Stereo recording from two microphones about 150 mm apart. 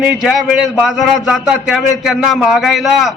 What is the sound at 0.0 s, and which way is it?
A man's voice, 5° right (ahead or behind).